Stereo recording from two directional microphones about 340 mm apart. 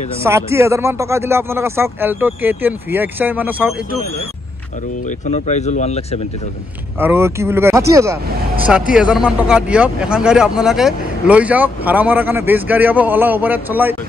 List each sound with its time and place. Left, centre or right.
0.2 s speech: centre
5.0 s speech: left
7.0 s speech: centre